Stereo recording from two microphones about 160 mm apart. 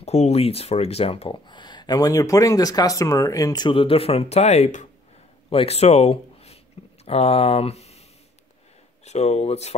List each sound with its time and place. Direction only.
0.0 s speech: 40° left (ahead or behind)
9.0 s speech: 45° left (ahead or behind)